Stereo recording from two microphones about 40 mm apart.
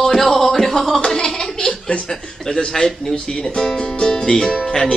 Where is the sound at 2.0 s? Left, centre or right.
Centre.